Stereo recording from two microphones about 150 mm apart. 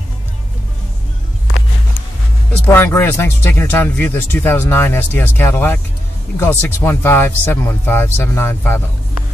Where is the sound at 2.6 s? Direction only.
15° left (ahead or behind).